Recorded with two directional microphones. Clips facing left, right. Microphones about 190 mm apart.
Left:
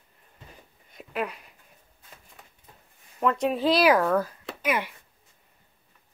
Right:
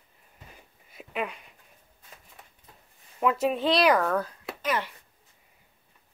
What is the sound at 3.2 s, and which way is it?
Speech, 5° right (ahead or behind).